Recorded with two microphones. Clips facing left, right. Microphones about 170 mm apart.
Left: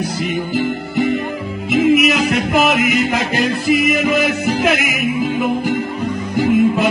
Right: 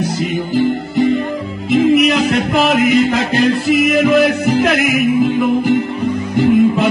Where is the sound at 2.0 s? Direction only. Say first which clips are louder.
Right 2 dB; 5° left (ahead or behind).